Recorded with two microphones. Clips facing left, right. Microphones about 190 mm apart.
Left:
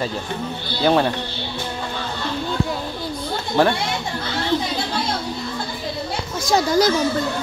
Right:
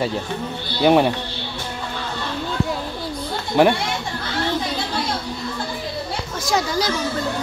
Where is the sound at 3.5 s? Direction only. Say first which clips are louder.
Right 2 dB; 10° right (ahead or behind).